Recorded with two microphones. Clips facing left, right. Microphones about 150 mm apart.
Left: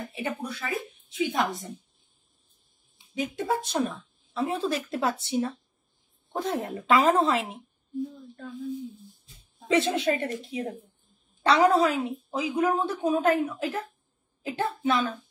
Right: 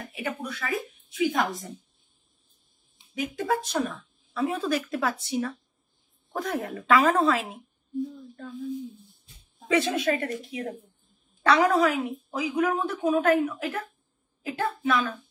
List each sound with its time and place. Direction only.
0.1 s speech: 25° left (ahead or behind)
3.2 s speech: 30° left (ahead or behind)
9.7 s a woman's voice: 25° left (ahead or behind)